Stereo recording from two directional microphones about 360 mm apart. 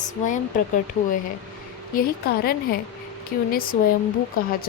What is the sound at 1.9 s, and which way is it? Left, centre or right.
A woman's voice, left.